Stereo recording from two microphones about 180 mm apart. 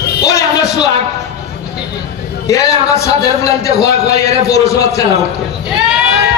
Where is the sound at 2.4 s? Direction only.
15° left (ahead or behind).